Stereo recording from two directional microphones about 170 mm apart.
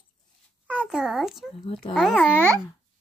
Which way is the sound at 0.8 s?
Centre (ahead or behind).